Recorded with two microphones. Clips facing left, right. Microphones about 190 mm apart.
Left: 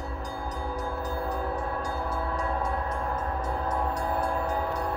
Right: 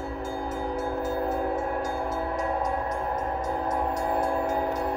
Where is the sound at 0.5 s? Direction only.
20° right (ahead or behind).